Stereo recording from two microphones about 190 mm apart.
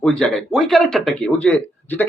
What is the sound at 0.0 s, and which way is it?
A man's voice, centre (ahead or behind).